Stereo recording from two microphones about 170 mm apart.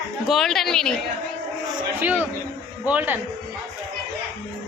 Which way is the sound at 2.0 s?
10° right (ahead or behind).